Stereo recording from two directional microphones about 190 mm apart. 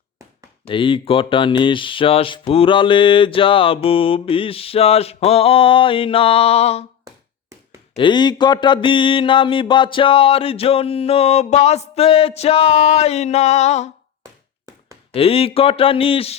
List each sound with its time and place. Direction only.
0.7 s speech: 25° left (ahead or behind)
7.9 s speech: 25° left (ahead or behind)
15.1 s speech: 30° left (ahead or behind)